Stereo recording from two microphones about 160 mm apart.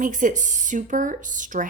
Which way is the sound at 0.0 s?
55° right (ahead or behind).